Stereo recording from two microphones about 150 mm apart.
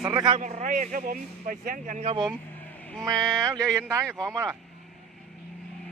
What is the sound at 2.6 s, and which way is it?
Vehicle, 10° left (ahead or behind).